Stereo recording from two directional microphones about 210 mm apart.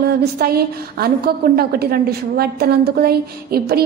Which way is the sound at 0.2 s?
45° right (ahead or behind).